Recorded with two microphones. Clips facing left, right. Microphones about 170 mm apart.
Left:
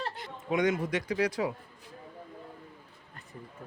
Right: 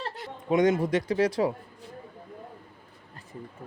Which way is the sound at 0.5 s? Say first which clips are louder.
Right 5 dB; 35° right (ahead or behind).